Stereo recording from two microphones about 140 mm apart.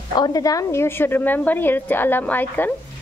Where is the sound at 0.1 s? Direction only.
30° left (ahead or behind).